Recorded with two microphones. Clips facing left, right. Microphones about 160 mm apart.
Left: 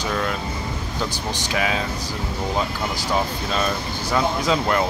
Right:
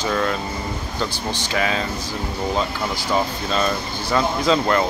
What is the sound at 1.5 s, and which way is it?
Speech, 5° left (ahead or behind).